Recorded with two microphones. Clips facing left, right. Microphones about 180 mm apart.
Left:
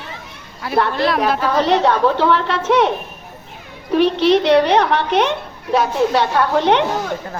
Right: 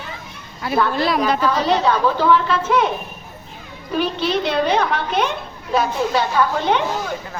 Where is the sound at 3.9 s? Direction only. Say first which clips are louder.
Left 7 dB; 75° left (ahead or behind).